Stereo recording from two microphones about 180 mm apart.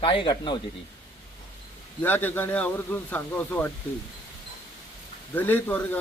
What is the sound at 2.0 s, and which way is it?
A man's voice, 10° left (ahead or behind).